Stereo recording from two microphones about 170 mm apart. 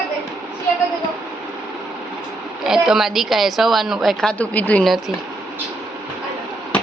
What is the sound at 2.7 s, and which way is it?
Speech, 5° right (ahead or behind).